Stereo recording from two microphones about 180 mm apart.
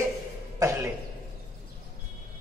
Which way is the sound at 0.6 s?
15° right (ahead or behind).